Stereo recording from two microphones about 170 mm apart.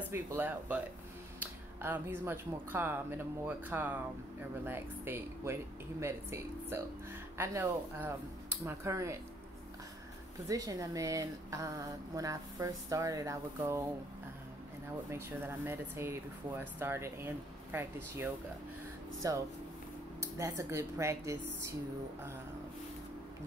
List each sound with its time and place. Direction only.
0.1 s speech: 15° right (ahead or behind)
10.5 s speech: 20° right (ahead or behind)
15.0 s speech: 15° right (ahead or behind)